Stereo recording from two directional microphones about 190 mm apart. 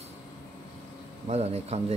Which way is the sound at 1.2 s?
35° right (ahead or behind).